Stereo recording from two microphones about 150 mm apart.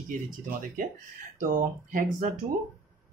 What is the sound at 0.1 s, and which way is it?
Speech, 60° right (ahead or behind).